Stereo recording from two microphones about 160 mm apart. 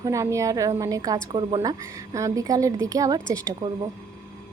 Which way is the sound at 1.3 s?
30° right (ahead or behind).